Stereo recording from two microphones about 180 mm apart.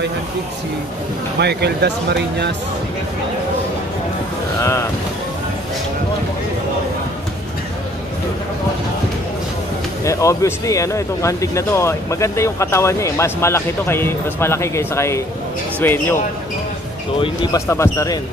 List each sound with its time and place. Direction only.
1.4 s speech: 65° right (ahead or behind)
4.6 s a sound: 15° left (ahead or behind)
10.0 s speech: 15° left (ahead or behind)
17.2 s speech: 20° left (ahead or behind)